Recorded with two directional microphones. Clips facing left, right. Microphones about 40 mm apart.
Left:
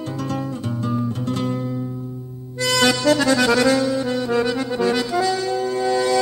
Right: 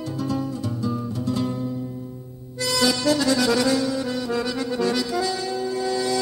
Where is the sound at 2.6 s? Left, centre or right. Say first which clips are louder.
Left 4 dB; left.